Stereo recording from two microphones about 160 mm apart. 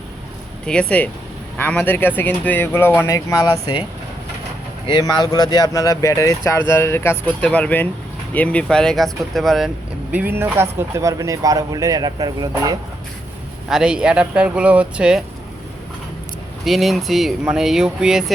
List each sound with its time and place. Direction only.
0.6 s speech: 5° left (ahead or behind); by 3.8 s 25° left (ahead or behind)
4.9 s speech: 25° left (ahead or behind); by 12.7 s 25° right (ahead or behind)
13.7 s speech: 5° right (ahead or behind)
16.6 s speech: centre (ahead or behind)